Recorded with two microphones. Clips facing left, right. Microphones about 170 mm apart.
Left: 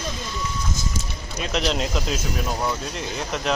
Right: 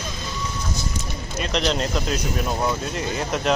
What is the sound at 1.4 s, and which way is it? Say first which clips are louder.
Speech: right 1 dB; 5° left (ahead or behind).